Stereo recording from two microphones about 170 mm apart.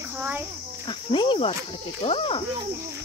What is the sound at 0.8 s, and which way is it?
Speech, 30° left (ahead or behind).